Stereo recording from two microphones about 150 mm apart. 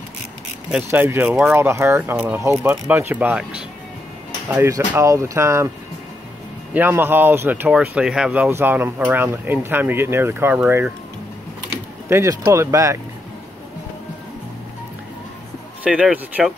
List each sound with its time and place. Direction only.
0.8 s speech: 15° right (ahead or behind)
4.5 s speech: 15° right (ahead or behind)
6.7 s speech: 15° right (ahead or behind)
12.1 s speech: 20° right (ahead or behind)
15.8 s speech: 5° right (ahead or behind)